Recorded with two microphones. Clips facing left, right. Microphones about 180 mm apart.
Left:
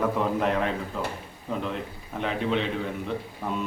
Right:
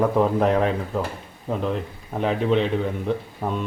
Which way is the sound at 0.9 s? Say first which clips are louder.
Right 5 dB; 40° right (ahead or behind).